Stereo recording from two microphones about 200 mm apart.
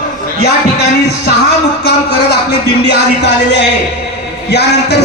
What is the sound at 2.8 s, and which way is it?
Music, 60° left (ahead or behind).